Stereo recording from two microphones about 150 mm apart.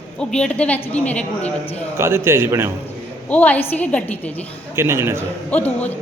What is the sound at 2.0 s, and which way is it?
Speech, 15° right (ahead or behind).